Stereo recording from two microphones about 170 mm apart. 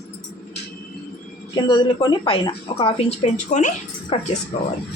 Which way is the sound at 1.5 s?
25° left (ahead or behind).